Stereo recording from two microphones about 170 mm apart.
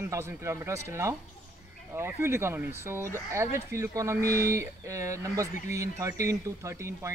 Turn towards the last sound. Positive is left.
turn(degrees=-15)  # may be behind; listen again after turning